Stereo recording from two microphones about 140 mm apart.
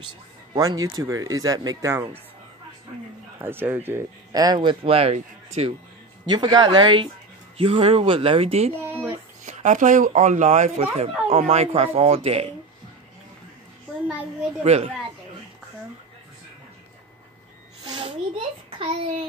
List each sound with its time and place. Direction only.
0.6 s speech: 25° right (ahead or behind)
3.3 s speech: 15° right (ahead or behind)
4.3 s speech: 30° right (ahead or behind); by 5.8 s 50° right (ahead or behind)
6.2 s speech: 30° right (ahead or behind); by 8.7 s 45° right (ahead or behind)
9.4 s speech: 60° right (ahead or behind)
11.0 s speech: 45° right (ahead or behind)
14.6 s speech: 50° right (ahead or behind)
17.9 s a sound: 35° right (ahead or behind)